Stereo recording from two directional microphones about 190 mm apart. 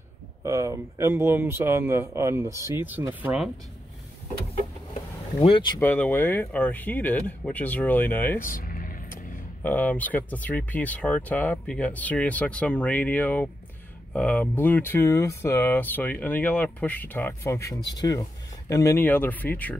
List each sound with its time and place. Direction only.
0.4 s speech: 15° right (ahead or behind)
5.4 s speech: 25° left (ahead or behind)
5.8 s speech: 10° left (ahead or behind)
8.4 s vehicle: 45° left (ahead or behind)
9.6 s speech: 10° left (ahead or behind)